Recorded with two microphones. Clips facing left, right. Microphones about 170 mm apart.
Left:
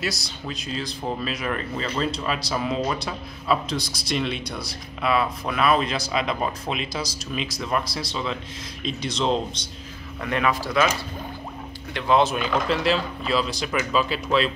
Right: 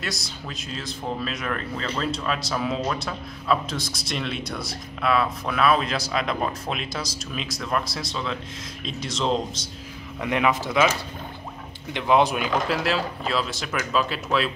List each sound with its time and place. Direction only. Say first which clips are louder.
0.0 s speech: left 3 dB; centre (ahead or behind)
10.2 s speech: right 1 dB; 15° right (ahead or behind)
11.9 s speech: even; 15° right (ahead or behind)